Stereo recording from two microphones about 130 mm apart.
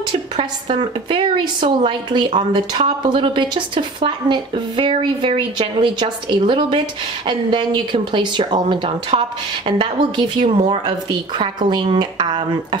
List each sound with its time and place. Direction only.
0.4 s a woman's voice: 40° right (ahead or behind)